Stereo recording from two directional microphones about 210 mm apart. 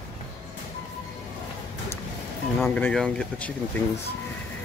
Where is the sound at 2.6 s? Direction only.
5° left (ahead or behind).